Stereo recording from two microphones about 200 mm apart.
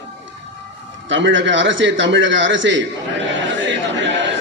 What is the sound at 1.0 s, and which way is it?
A man's voice, 65° right (ahead or behind).